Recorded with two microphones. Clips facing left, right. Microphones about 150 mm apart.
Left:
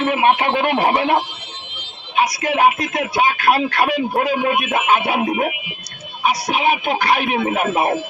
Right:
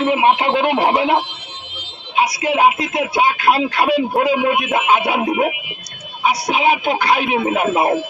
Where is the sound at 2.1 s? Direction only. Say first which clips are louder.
Right 1 dB; 10° right (ahead or behind).